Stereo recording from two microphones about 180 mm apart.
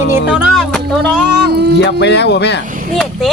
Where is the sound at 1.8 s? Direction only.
70° left (ahead or behind).